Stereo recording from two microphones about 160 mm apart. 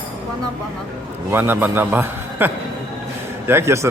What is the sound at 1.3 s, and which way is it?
A man's voice, 15° right (ahead or behind).